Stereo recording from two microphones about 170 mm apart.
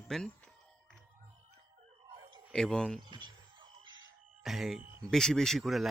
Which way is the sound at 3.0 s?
25° right (ahead or behind).